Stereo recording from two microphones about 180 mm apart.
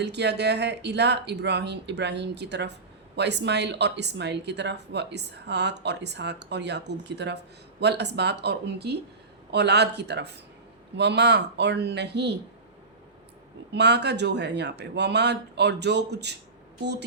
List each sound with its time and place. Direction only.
0.0 s speech: 70° right (ahead or behind)
13.7 s speech: 70° right (ahead or behind)